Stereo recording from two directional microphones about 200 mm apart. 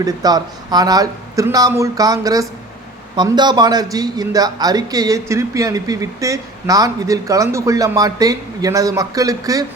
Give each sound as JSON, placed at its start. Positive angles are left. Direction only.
{"t": 0.0, "sound": "a man's voice", "side_deg": -20}